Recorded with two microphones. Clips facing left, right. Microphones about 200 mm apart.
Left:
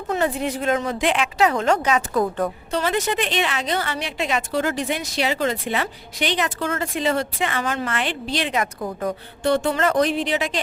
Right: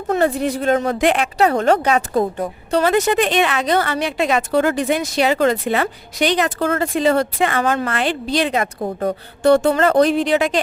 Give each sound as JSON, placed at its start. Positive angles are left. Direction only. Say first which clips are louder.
{"t": 0.1, "sound": "a woman's voice", "louder": "right 5 dB", "side_deg": -50}
{"t": 1.2, "sound": "a woman's voice", "louder": "right 3 dB", "side_deg": -35}
{"t": 2.1, "sound": "a woman's voice", "louder": "right 2 dB", "side_deg": -25}
{"t": 2.8, "sound": "a woman's voice", "louder": "right 7 dB", "side_deg": -45}
{"t": 7.9, "sound": "a woman's voice", "louder": "right 5 dB", "side_deg": -40}